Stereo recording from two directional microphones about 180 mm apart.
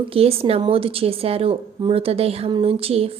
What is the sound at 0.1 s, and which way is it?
A woman's voice, 35° right (ahead or behind).